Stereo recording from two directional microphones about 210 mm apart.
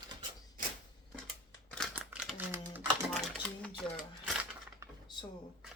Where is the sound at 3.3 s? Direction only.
5° left (ahead or behind).